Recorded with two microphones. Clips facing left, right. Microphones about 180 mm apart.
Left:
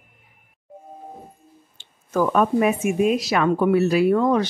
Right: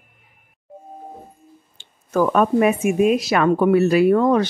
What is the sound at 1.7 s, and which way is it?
Speech, 60° right (ahead or behind).